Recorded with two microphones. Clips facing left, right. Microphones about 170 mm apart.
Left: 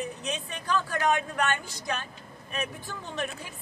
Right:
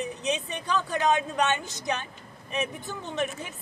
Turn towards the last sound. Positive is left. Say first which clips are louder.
# right 3 dB
turn(degrees=-20)  # may be behind; listen again after turning